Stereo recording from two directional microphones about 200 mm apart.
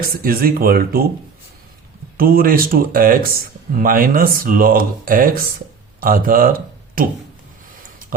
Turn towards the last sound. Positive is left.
turn(degrees=-45)  # may be behind; listen again after turning